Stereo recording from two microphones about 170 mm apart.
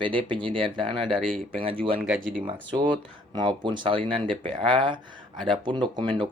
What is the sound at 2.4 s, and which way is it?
Speech, 25° right (ahead or behind).